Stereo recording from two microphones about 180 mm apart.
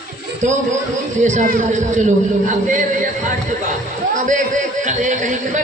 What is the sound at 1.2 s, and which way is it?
Speech, 45° right (ahead or behind).